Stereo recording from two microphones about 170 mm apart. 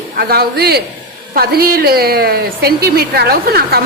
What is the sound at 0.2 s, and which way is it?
A woman's voice, 65° right (ahead or behind).